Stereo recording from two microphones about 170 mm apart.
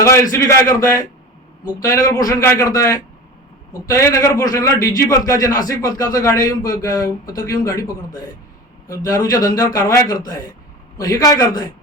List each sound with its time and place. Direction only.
0.0 s a man's voice: 15° left (ahead or behind)